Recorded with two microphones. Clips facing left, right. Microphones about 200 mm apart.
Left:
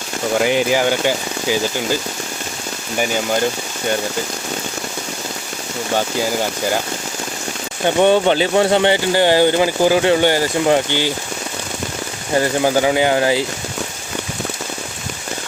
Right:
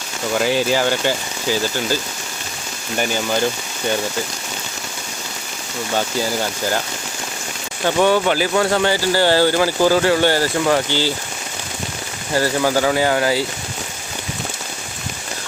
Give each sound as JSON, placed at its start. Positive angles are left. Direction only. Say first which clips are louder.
{"t": 0.4, "sound": "speech", "louder": "left 1 dB", "side_deg": 15}
{"t": 7.9, "sound": "speech", "louder": "left 3 dB", "side_deg": 25}
{"t": 12.3, "sound": "speech", "louder": "left 2 dB", "side_deg": 20}